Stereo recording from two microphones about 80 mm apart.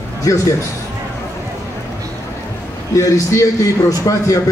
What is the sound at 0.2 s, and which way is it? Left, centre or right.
Speech, left.